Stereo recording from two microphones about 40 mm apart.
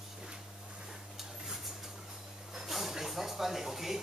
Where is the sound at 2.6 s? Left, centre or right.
Centre.